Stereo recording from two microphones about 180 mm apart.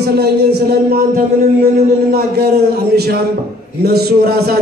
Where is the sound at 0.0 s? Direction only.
65° right (ahead or behind).